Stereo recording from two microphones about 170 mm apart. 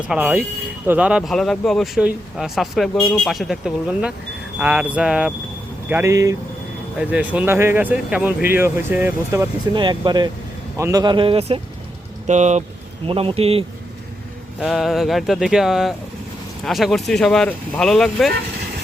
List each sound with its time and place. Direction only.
0.1 s speech: 10° right (ahead or behind)
5.9 s speech: 15° right (ahead or behind)
9.7 s speech: 25° right (ahead or behind)
12.2 s speech: 45° right (ahead or behind)
13.1 s speech: 35° right (ahead or behind)
14.6 s speech: centre (ahead or behind)